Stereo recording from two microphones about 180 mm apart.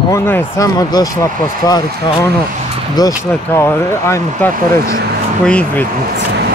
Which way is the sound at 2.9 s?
20° left (ahead or behind).